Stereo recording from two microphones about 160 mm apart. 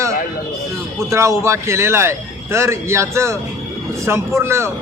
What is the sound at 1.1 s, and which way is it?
A man's voice, 15° right (ahead or behind).